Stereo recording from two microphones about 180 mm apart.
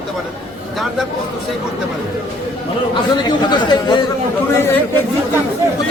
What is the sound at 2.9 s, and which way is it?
Speech, 25° left (ahead or behind).